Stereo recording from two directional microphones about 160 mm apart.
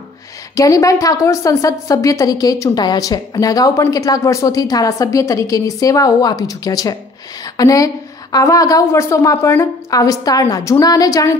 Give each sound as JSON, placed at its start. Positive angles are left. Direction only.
{"t": 0.6, "sound": "a woman's voice", "side_deg": 20}